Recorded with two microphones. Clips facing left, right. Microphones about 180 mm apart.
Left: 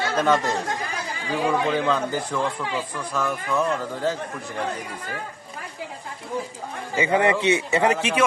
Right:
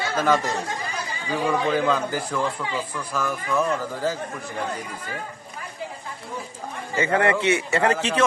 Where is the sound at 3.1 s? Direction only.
Centre (ahead or behind).